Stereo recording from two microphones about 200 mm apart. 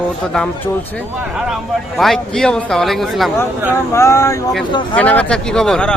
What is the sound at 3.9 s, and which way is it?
Speech, 15° left (ahead or behind).